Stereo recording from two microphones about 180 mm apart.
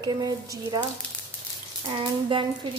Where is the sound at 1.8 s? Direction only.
25° right (ahead or behind).